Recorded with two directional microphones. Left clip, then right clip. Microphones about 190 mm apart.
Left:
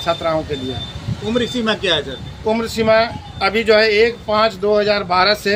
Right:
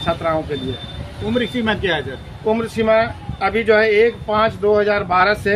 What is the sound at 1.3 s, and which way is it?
Speech, 25° right (ahead or behind).